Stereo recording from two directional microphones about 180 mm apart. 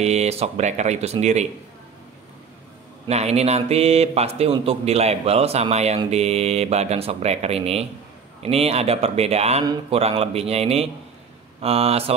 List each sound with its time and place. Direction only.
0.0 s speech: 35° right (ahead or behind)
3.1 s speech: 35° right (ahead or behind)